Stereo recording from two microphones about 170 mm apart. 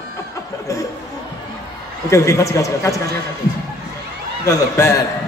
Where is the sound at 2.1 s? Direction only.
20° left (ahead or behind).